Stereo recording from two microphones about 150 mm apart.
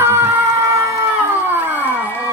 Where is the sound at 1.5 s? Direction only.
10° right (ahead or behind).